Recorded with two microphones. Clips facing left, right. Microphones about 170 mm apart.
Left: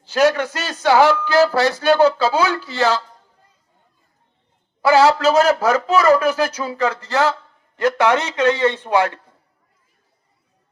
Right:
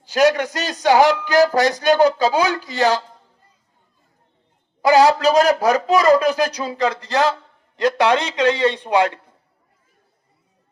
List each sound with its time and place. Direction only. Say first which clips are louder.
0.0 s speech: even; 15° right (ahead or behind)
4.8 s speech: even; 15° right (ahead or behind)